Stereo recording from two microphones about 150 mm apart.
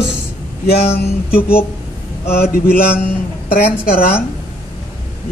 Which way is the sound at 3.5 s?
80° left.